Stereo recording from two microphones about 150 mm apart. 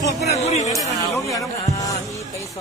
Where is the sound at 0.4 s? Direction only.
50° left (ahead or behind).